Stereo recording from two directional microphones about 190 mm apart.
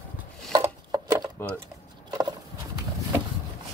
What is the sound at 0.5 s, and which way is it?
Chopping, 20° right (ahead or behind).